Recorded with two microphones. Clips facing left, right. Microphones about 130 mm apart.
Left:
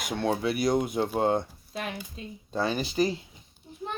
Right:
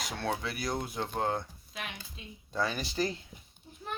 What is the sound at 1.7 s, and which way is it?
Speech, 40° left (ahead or behind).